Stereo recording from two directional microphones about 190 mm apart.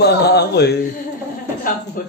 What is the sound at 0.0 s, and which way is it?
Mantra, 60° left (ahead or behind).